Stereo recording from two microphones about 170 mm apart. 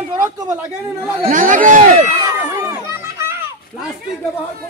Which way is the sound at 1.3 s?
50° right (ahead or behind).